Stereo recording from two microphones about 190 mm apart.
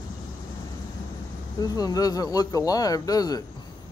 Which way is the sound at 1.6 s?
20° left (ahead or behind).